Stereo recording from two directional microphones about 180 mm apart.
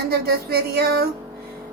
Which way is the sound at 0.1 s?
60° right (ahead or behind).